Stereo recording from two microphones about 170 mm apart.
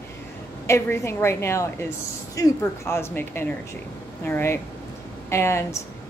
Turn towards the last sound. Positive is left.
turn(degrees=15)  # may be behind; listen again after turning